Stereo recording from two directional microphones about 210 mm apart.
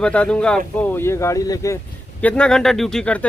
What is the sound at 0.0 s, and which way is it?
Speech, 5° left (ahead or behind).